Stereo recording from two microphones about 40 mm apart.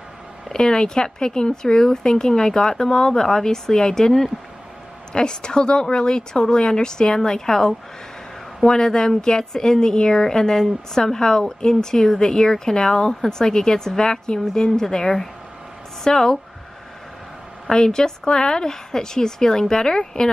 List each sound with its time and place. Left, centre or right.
0.5 s a woman's voice: centre
17.6 s a woman's voice: centre